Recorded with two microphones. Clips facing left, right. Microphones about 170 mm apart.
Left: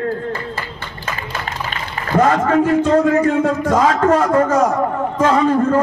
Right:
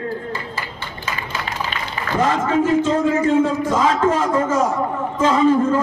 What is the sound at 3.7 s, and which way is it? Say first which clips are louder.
A man's voice: left 5 dB; 50° left (ahead or behind).